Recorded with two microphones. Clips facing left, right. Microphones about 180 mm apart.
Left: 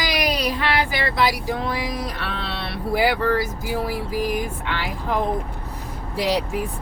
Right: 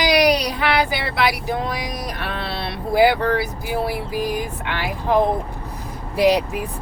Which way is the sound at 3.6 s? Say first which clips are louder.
Right 2 dB; 15° right (ahead or behind).